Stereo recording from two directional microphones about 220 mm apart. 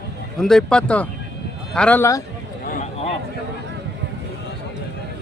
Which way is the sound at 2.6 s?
40° left (ahead or behind).